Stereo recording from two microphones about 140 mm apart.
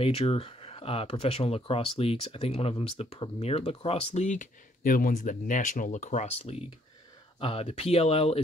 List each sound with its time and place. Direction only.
0.0 s speech: 45° left (ahead or behind)